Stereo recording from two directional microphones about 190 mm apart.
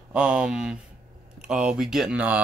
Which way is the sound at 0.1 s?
5° right (ahead or behind).